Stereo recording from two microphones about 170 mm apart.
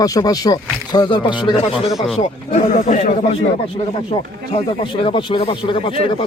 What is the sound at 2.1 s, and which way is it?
Speech, 45° left (ahead or behind).